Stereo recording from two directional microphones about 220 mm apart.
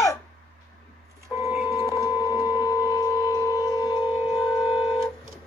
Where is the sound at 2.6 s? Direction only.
15° left (ahead or behind).